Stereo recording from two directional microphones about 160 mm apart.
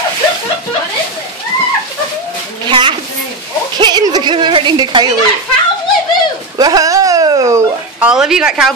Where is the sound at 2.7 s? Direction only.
30° right (ahead or behind).